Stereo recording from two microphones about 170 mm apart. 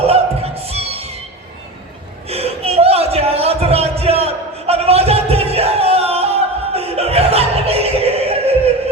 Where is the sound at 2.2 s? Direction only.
35° right (ahead or behind).